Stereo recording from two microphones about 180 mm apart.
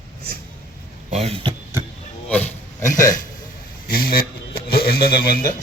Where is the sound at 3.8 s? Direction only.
55° left (ahead or behind).